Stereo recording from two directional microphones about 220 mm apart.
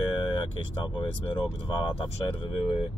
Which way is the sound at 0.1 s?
25° left (ahead or behind).